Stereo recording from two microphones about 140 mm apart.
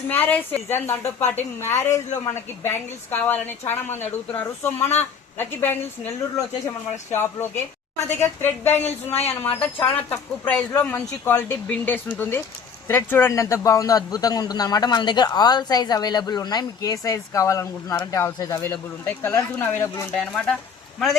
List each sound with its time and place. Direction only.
0.1 s a man's voice: 10° left (ahead or behind); by 18.6 s 25° left (ahead or behind)
18.6 s speech: 15° left (ahead or behind)
20.1 s speech: 5° left (ahead or behind)